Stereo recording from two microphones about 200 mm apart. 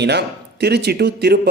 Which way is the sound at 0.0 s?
55° right (ahead or behind).